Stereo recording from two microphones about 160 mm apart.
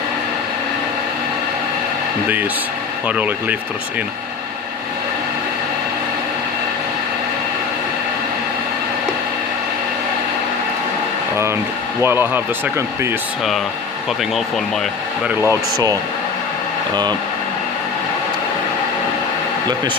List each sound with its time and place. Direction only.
3.1 s speech: 10° right (ahead or behind)
12.0 s speech: 15° right (ahead or behind)
15.3 s speech: 15° right (ahead or behind)